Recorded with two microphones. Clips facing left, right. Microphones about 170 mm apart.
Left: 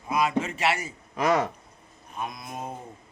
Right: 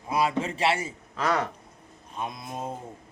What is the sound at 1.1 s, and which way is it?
Speech, 15° left (ahead or behind).